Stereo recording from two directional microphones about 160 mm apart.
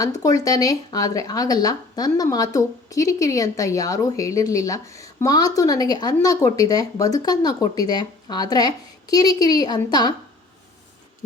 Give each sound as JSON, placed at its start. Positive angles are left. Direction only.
{"t": 0.2, "sound": "speech", "side_deg": 20}